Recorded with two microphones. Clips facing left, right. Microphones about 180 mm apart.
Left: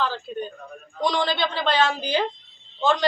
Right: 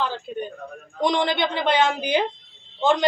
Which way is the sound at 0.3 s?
15° right (ahead or behind).